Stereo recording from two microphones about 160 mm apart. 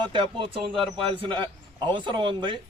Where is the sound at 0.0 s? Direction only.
30° right (ahead or behind).